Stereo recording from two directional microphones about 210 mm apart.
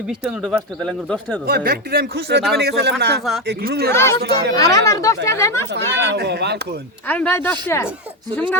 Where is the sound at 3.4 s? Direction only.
50° right (ahead or behind).